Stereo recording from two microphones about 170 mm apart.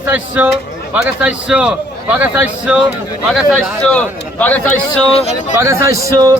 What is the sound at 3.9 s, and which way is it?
A man's voice, 10° left (ahead or behind).